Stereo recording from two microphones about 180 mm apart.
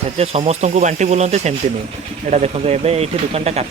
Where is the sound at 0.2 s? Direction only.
35° right (ahead or behind).